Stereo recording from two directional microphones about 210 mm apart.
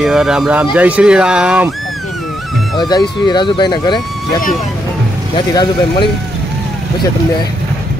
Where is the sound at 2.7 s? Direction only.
20° left (ahead or behind).